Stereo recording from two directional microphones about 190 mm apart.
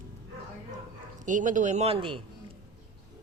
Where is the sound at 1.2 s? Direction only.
40° right (ahead or behind).